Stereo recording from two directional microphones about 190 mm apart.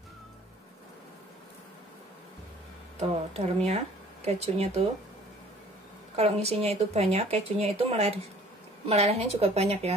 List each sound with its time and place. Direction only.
3.0 s speech: 30° right (ahead or behind)
6.1 s speech: 30° right (ahead or behind)